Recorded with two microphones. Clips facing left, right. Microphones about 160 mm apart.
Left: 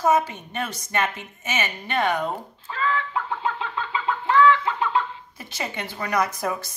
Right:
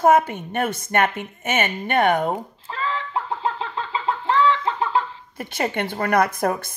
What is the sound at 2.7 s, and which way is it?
Chicken, 30° right (ahead or behind).